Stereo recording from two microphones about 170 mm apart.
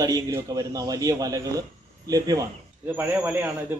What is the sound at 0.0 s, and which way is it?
A man's voice, 20° right (ahead or behind).